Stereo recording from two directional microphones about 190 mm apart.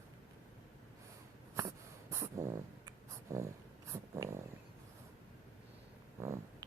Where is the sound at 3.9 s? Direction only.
15° right (ahead or behind).